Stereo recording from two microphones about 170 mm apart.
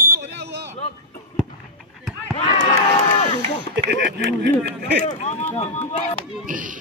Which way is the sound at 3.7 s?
90° right.